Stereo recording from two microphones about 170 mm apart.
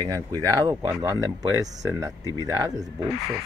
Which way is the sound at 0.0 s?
20° right (ahead or behind).